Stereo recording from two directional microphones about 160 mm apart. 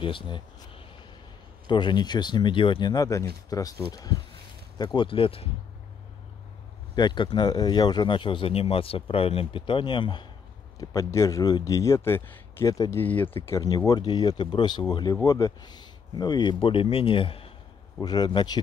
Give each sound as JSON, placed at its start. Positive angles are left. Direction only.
{"t": 0.0, "sound": "speech", "side_deg": 35}
{"t": 7.0, "sound": "speech", "side_deg": 30}
{"t": 13.0, "sound": "speech", "side_deg": 10}
{"t": 13.5, "sound": "speech", "side_deg": 25}